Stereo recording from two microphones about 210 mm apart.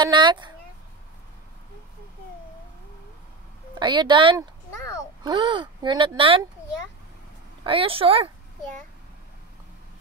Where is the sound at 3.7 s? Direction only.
20° right (ahead or behind).